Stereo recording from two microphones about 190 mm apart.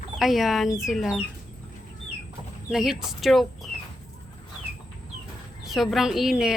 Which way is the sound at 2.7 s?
Centre (ahead or behind).